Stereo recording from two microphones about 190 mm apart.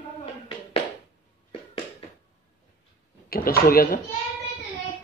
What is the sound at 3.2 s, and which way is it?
Speech, 50° left (ahead or behind).